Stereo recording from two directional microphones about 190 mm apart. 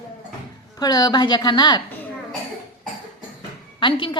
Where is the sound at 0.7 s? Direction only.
20° left (ahead or behind).